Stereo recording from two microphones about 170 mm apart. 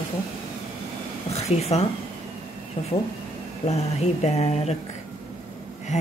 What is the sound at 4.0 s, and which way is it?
Speech, 40° left (ahead or behind).